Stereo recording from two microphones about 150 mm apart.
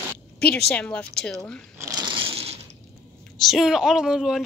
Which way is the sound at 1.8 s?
25° right (ahead or behind).